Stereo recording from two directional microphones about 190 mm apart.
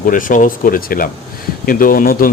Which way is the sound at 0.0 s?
45° left (ahead or behind).